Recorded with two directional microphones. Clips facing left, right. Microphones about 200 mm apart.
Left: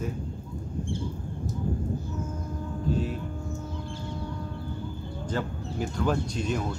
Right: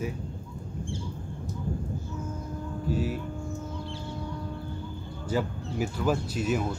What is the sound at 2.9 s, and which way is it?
Speech, 5° right (ahead or behind).